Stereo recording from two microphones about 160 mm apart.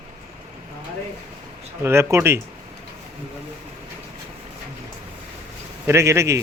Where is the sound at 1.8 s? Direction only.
15° right (ahead or behind).